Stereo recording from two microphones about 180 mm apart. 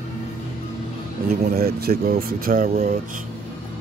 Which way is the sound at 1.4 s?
60° right (ahead or behind).